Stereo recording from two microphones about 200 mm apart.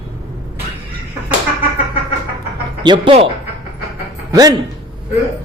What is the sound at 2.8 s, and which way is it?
Speech, 25° right (ahead or behind).